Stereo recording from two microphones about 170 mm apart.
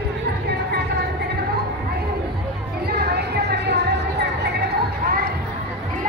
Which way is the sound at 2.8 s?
70° right (ahead or behind).